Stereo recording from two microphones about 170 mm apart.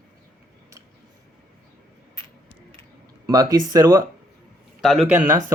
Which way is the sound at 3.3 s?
20° right (ahead or behind).